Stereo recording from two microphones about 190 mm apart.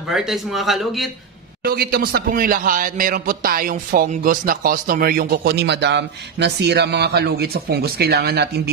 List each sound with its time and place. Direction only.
0.1 s a man's voice: centre (ahead or behind)
1.6 s a man's voice: 55° right (ahead or behind)